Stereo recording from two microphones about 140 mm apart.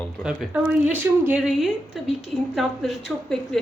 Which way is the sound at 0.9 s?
10° right (ahead or behind).